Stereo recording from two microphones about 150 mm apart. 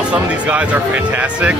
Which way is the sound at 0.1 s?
10° right (ahead or behind).